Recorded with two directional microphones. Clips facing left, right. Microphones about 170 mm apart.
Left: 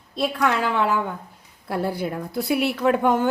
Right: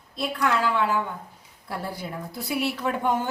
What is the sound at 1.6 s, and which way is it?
A woman's voice, 60° left (ahead or behind).